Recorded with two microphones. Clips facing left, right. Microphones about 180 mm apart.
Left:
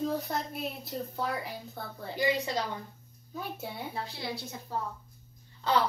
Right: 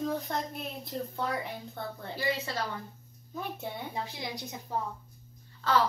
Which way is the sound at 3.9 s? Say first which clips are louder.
Even; 15° right (ahead or behind).